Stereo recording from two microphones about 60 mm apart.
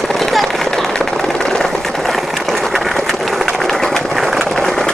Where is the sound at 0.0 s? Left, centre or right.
Centre.